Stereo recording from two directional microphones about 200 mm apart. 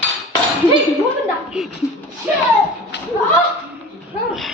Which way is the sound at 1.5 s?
Centre (ahead or behind).